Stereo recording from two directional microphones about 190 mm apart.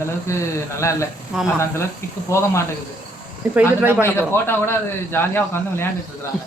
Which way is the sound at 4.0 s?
10° left (ahead or behind).